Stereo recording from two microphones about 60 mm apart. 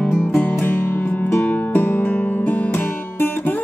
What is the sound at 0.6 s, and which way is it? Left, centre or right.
Music, left.